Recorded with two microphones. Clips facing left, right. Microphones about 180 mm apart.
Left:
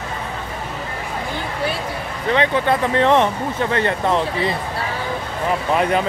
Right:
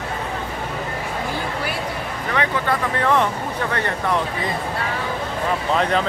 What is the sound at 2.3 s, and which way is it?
Speech, 25° left (ahead or behind).